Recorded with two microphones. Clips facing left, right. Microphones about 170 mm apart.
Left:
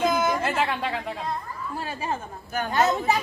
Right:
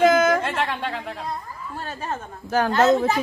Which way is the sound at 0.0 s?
90° right.